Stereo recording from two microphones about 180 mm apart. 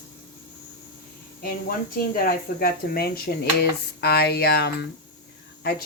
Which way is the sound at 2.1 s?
55° left (ahead or behind).